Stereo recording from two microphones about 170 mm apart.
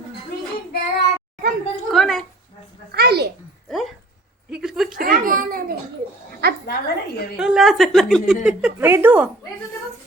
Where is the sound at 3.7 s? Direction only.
Centre (ahead or behind).